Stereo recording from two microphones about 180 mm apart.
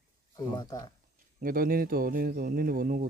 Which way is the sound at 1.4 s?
55° right (ahead or behind).